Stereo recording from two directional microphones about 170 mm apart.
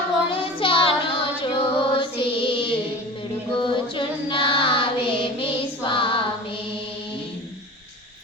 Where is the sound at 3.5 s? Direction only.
30° left (ahead or behind).